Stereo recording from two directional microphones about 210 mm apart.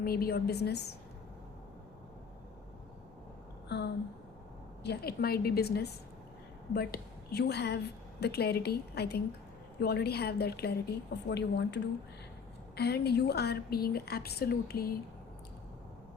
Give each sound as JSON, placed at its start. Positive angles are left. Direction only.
{"t": 0.0, "sound": "a woman's voice", "side_deg": 45}
{"t": 3.7, "sound": "a woman's voice", "side_deg": 55}